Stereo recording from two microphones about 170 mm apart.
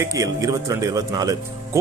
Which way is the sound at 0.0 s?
20° right (ahead or behind).